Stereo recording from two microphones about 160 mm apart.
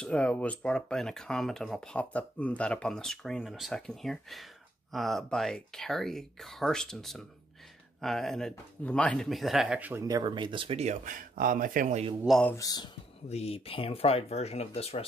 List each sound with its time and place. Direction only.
0.0 s speech: 5° left (ahead or behind); by 10.0 s 10° right (ahead or behind)
10.0 s speech: 25° right (ahead or behind)
11.1 s speech: 60° right (ahead or behind)
12.3 s speech: 5° left (ahead or behind)
12.5 s speech: 25° left (ahead or behind)
13.3 s speech: 40° left (ahead or behind)